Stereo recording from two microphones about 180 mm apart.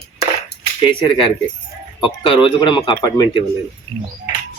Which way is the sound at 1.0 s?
30° left (ahead or behind).